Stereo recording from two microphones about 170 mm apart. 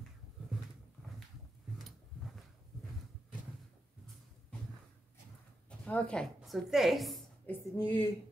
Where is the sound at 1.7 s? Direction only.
Centre (ahead or behind).